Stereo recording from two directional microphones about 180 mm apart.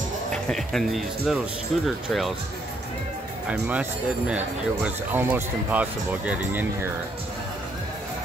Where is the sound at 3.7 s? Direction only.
5° right (ahead or behind).